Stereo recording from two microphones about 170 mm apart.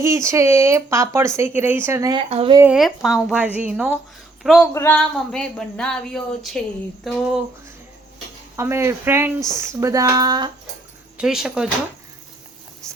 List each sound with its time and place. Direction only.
0.0 s speech: 15° right (ahead or behind)
2.3 s speech: 35° right (ahead or behind)
2.7 s speech: centre (ahead or behind)
8.5 s speech: 15° right (ahead or behind)
11.2 s speech: 5° right (ahead or behind)